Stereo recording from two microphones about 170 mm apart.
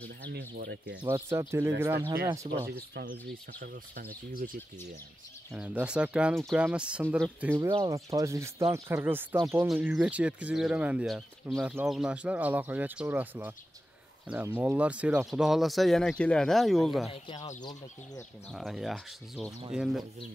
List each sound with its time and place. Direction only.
0.3 s speech: 90° right
1.0 s speech: 15° right (ahead or behind)
2.7 s speech: 65° right (ahead or behind)
5.5 s speech: 5° right (ahead or behind)
17.1 s speech: 30° left (ahead or behind)
18.5 s speech: centre (ahead or behind)